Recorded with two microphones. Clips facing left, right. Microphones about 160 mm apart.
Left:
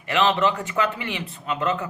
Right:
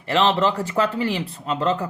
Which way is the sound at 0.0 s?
30° right (ahead or behind).